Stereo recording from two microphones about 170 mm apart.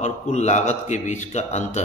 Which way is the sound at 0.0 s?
40° left (ahead or behind).